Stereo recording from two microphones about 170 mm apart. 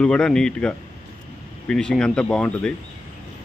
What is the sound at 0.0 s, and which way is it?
Speech, 5° left (ahead or behind).